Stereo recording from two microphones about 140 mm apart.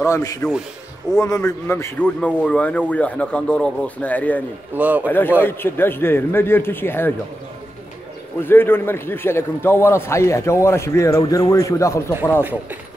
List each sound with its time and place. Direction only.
0.0 s a man's voice: 25° left (ahead or behind)
4.7 s a man's voice: 10° right (ahead or behind)
5.0 s a man's voice: 15° left (ahead or behind)
8.5 s a man's voice: 15° left (ahead or behind)